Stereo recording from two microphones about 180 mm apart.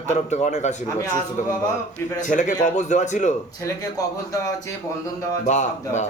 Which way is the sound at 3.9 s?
20° left (ahead or behind).